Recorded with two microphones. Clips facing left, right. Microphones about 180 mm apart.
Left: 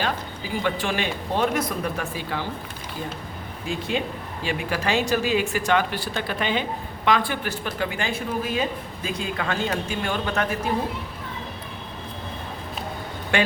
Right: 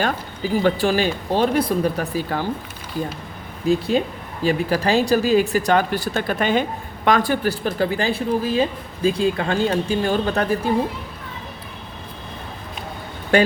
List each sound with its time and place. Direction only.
0.6 s speech: 35° right (ahead or behind)
3.7 s speech: 35° right (ahead or behind)
13.3 s speech: 40° right (ahead or behind)